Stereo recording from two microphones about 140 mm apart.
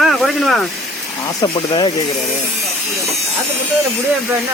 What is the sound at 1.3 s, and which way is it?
Speech, 30° left (ahead or behind).